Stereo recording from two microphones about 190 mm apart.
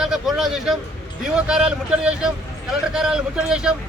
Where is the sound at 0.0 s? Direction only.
Centre (ahead or behind).